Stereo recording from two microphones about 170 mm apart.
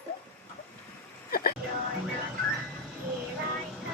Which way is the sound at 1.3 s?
60° left (ahead or behind).